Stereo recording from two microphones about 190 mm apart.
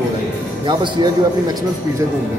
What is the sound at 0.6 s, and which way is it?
Speech, 25° right (ahead or behind).